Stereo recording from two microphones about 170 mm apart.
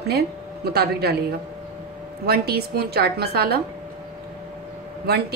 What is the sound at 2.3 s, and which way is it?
A woman's voice, 70° right (ahead or behind).